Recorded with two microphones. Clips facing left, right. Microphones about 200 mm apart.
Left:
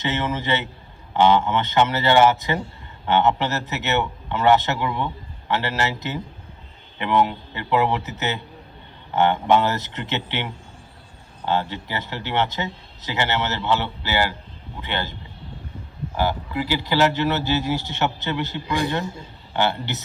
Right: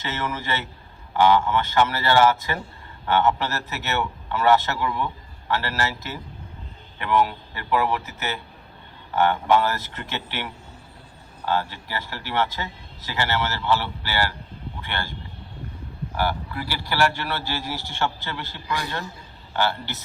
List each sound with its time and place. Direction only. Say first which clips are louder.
0.0 s speech: left 5 dB; 20° left (ahead or behind)
16.1 s speech: left 3 dB; 20° left (ahead or behind)